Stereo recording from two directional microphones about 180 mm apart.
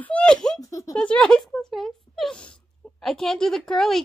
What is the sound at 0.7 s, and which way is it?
A woman's voice, 15° left (ahead or behind).